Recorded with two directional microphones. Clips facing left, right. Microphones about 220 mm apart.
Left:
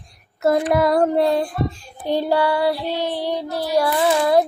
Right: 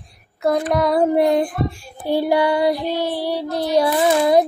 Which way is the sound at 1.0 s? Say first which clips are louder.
Right 2 dB; 15° right (ahead or behind).